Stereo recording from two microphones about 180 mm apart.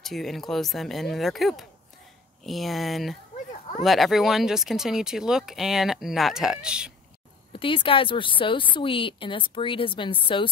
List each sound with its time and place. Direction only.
0.0 s speech: centre (ahead or behind)
7.5 s speech: 30° left (ahead or behind)